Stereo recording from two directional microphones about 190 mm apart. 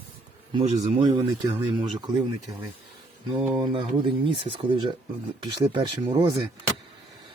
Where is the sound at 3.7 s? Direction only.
25° right (ahead or behind).